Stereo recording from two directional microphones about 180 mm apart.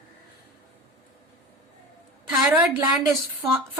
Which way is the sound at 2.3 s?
5° right (ahead or behind).